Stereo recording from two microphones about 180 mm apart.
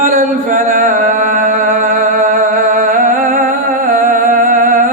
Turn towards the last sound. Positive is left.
turn(degrees=-45)  # may be behind; listen again after turning